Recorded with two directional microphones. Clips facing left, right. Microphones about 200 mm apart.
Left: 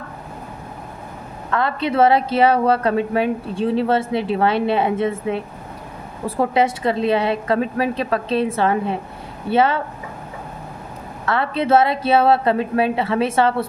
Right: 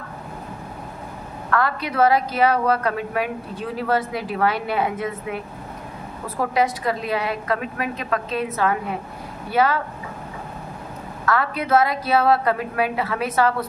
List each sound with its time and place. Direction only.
1.5 s a woman's voice: 25° left (ahead or behind)
11.2 s a woman's voice: 25° left (ahead or behind)